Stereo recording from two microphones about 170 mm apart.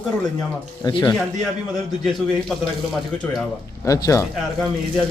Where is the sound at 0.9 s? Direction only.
25° left (ahead or behind).